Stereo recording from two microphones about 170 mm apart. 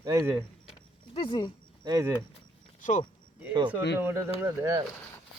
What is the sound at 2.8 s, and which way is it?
Speech, 50° left (ahead or behind).